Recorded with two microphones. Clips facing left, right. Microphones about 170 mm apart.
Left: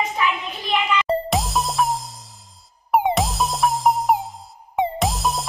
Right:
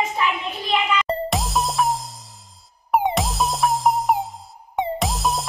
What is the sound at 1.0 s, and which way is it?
Music, centre (ahead or behind).